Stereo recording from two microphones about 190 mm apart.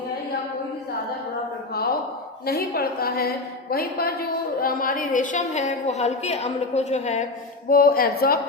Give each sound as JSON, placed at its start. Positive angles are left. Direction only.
{"t": 1.7, "sound": "a sound", "side_deg": 55}
{"t": 2.5, "sound": "a woman's voice", "side_deg": 55}
{"t": 7.7, "sound": "a woman's voice", "side_deg": 50}